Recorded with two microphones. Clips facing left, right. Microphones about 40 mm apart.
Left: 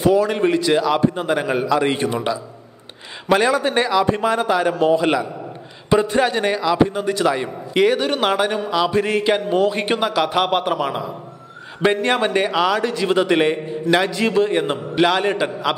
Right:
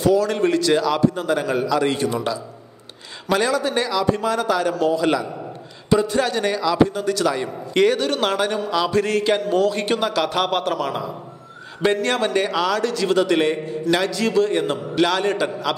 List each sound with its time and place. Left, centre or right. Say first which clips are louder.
0.0 s a man's voice: left 2 dB; left